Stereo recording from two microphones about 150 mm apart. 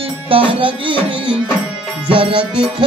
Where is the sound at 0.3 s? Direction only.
35° right (ahead or behind).